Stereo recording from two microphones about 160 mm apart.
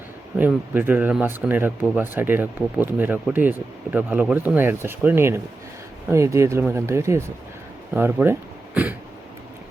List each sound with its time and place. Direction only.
0.3 s speech: 10° right (ahead or behind)